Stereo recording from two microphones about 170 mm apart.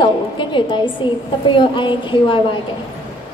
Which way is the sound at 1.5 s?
30° left (ahead or behind).